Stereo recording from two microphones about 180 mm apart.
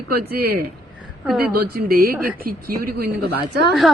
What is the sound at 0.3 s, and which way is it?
A woman's voice, 60° right (ahead or behind).